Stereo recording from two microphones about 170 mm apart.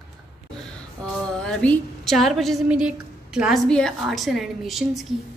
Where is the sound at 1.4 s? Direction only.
5° left (ahead or behind).